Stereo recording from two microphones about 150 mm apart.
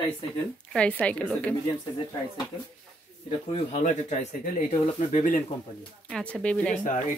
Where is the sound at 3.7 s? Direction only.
50° left (ahead or behind).